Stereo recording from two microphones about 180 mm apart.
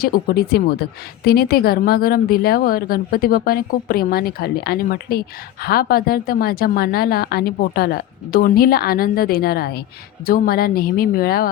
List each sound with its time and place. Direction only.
0.0 s a woman's voice: 55° left (ahead or behind)